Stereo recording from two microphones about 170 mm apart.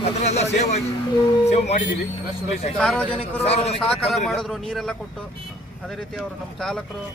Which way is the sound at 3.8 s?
Centre (ahead or behind).